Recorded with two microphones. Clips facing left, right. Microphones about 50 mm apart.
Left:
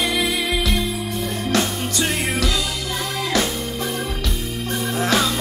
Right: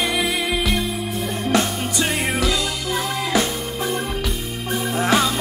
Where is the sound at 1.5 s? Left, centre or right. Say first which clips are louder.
Right 1 dB; centre.